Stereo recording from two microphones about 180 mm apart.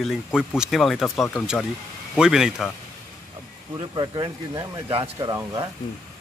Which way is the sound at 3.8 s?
25° right (ahead or behind).